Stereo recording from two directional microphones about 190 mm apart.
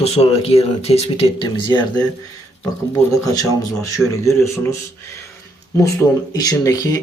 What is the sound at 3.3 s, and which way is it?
Speech, 15° left (ahead or behind).